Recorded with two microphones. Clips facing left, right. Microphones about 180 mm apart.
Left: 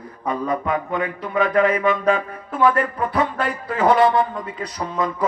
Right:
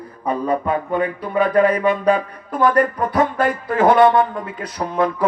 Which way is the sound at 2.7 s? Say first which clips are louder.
Right 4 dB; 45° right (ahead or behind).